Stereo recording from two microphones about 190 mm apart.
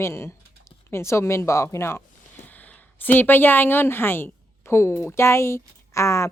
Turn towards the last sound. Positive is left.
turn(degrees=15)  # may be behind; listen again after turning